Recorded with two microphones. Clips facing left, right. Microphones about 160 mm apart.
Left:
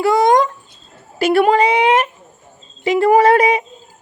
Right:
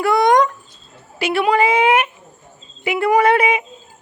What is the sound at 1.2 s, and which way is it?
Speech, 45° left (ahead or behind).